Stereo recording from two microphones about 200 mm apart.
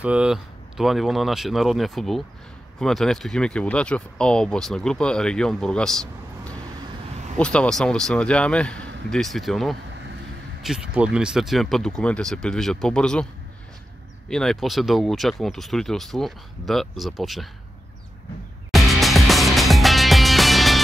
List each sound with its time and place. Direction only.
0.0 s speech: 5° right (ahead or behind)
14.3 s speech: centre (ahead or behind)
18.7 s music: centre (ahead or behind)